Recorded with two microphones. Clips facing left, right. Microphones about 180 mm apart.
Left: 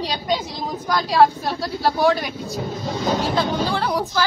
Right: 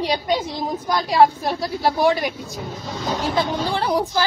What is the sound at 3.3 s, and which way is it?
Speech, 20° right (ahead or behind).